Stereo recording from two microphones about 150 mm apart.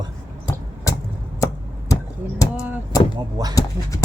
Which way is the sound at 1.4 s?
20° left (ahead or behind).